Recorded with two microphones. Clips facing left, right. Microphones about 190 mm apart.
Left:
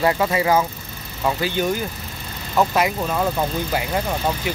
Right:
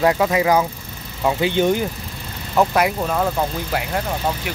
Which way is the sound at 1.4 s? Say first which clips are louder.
Right 7 dB; 20° right (ahead or behind).